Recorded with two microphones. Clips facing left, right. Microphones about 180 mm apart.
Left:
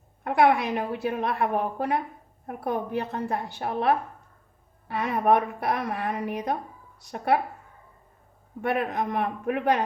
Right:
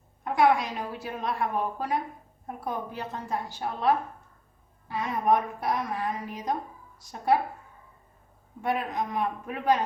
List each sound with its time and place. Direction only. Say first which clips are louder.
0.3 s a woman's voice: left 2 dB; 60° left (ahead or behind)
8.6 s a woman's voice: left 3 dB; 60° left (ahead or behind)